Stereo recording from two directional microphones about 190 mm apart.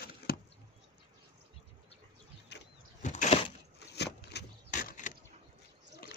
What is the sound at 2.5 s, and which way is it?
Vehicle, 65° left (ahead or behind).